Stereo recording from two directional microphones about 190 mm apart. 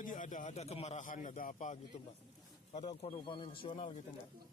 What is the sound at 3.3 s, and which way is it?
Speech, 25° left (ahead or behind).